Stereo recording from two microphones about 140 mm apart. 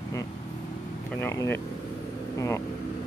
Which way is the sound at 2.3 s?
20° left (ahead or behind).